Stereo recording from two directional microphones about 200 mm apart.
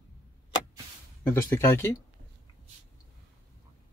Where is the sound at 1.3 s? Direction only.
10° left (ahead or behind).